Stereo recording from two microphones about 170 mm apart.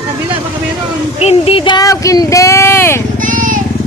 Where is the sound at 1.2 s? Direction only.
35° left (ahead or behind); by 3.0 s 15° left (ahead or behind).